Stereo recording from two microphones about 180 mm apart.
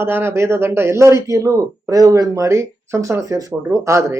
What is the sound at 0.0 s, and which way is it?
A man's voice, 10° right (ahead or behind).